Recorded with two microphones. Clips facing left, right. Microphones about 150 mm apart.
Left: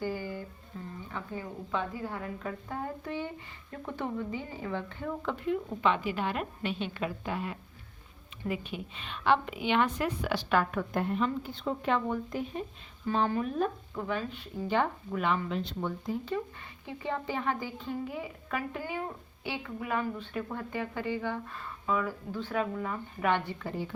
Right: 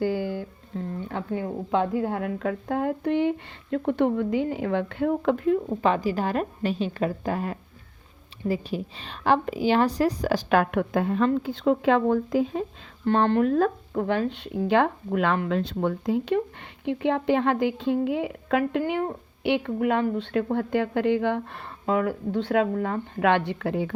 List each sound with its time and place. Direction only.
0.0 s guitar: 90° right
1.0 s a woman's voice: 65° right (ahead or behind)
5.5 s a woman's voice: 40° right (ahead or behind)
10.5 s a woman's voice: 65° right (ahead or behind); by 12.6 s 90° right
13.1 s speech: 75° right (ahead or behind)
16.8 s a woman's voice: 70° right (ahead or behind)
18.8 s a woman's voice: 60° right (ahead or behind)